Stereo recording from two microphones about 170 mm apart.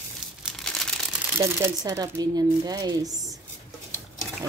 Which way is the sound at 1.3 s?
15° right (ahead or behind).